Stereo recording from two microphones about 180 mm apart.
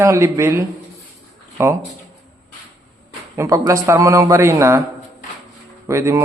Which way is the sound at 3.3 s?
15° right (ahead or behind).